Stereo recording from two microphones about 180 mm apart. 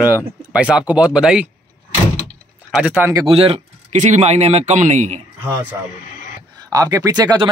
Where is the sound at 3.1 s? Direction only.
30° right (ahead or behind).